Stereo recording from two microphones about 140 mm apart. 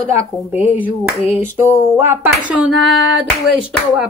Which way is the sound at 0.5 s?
10° right (ahead or behind).